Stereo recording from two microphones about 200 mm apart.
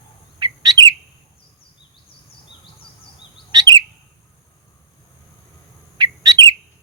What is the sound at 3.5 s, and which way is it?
Bird, 20° right (ahead or behind).